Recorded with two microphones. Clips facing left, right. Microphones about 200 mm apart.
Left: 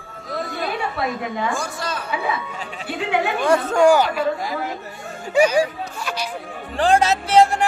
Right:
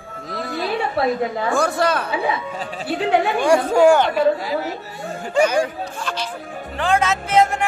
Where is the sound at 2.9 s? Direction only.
35° right (ahead or behind).